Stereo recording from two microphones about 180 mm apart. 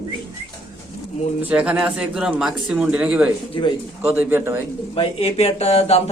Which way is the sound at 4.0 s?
10° right (ahead or behind).